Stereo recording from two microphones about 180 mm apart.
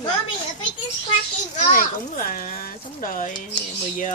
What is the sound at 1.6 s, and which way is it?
A child's voice, 50° left (ahead or behind).